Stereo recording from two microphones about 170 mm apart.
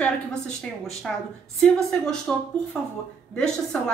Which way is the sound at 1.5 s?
5° left (ahead or behind).